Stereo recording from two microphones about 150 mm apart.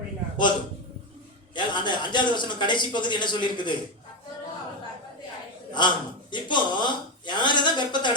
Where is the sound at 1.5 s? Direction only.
30° left (ahead or behind).